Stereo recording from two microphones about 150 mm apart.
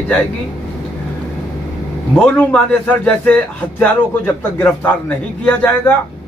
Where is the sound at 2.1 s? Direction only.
5° left (ahead or behind).